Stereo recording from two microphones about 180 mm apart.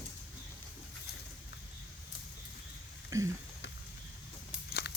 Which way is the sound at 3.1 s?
15° right (ahead or behind).